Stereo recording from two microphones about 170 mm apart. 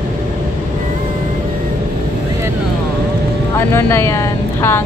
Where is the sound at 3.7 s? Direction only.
15° left (ahead or behind).